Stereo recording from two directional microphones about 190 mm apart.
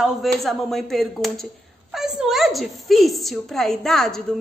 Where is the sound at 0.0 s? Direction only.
Centre (ahead or behind).